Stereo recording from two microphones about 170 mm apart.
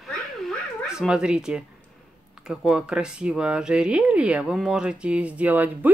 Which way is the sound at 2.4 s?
5° right (ahead or behind).